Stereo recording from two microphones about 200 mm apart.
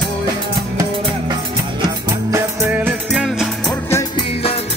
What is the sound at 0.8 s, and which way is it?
Music, 20° right (ahead or behind).